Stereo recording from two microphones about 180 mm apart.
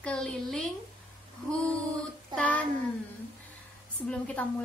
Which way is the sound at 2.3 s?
10° left (ahead or behind).